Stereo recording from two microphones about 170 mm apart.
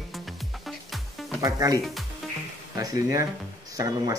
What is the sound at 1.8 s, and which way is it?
Speech, centre (ahead or behind).